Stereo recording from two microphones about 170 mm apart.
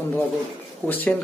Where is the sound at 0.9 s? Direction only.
10° left (ahead or behind).